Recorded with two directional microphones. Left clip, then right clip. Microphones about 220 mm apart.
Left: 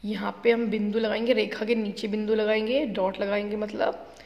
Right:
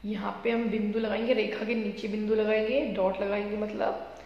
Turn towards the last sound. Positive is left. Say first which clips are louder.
# left 3 dB
turn(degrees=45)  # may be behind; listen again after turning